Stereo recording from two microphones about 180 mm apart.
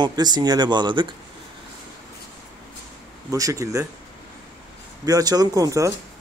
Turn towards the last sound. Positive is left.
turn(degrees=-20)  # may be behind; listen again after turning